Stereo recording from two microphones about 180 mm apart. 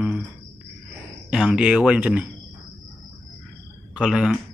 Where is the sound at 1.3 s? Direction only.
5° right (ahead or behind).